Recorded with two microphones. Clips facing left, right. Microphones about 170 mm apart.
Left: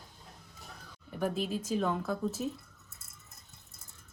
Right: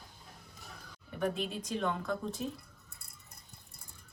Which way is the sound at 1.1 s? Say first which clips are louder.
Left 2 dB; 5° left (ahead or behind).